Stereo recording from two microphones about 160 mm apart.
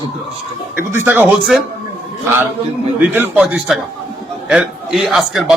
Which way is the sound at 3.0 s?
10° right (ahead or behind).